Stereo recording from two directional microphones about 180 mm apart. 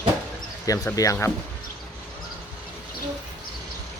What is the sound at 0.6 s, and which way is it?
Speech, 20° left (ahead or behind).